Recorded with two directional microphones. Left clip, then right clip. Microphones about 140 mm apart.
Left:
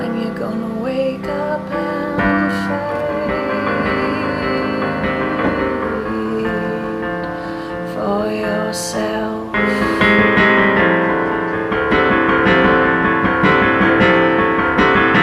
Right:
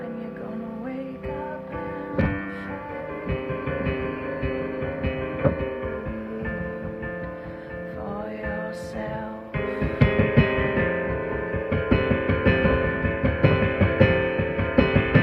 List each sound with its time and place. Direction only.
10.1 s music: 30° right (ahead or behind)